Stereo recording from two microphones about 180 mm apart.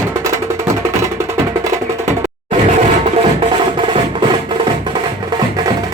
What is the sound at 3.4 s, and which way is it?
Music, 30° right (ahead or behind).